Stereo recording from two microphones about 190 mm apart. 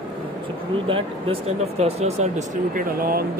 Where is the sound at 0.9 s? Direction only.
30° right (ahead or behind).